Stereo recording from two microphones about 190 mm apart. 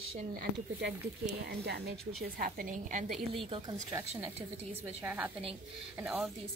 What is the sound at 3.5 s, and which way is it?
Speech, 20° right (ahead or behind).